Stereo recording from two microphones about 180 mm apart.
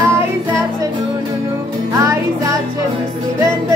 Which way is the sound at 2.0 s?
15° right (ahead or behind).